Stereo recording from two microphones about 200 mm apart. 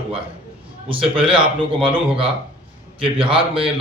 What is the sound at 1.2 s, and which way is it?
Speech, 5° right (ahead or behind).